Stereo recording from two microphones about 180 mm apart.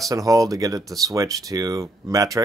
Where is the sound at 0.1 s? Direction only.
20° right (ahead or behind).